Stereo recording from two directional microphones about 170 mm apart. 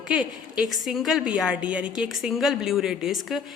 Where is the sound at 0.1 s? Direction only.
5° right (ahead or behind).